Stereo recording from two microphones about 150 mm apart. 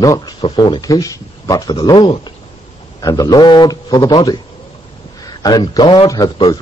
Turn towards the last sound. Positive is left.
turn(degrees=25)  # may be behind; listen again after turning